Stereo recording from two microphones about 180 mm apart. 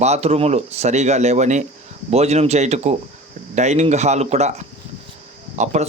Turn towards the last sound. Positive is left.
turn(degrees=-40)  # may be behind; listen again after turning